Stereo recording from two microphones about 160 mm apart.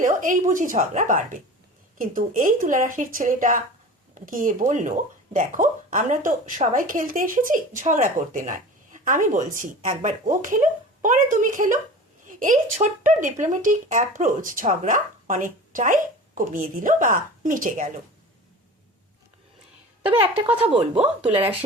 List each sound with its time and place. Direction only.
0.0 s speech: 55° right (ahead or behind)
20.0 s a woman's voice: 35° right (ahead or behind)
20.9 s speech: 5° right (ahead or behind)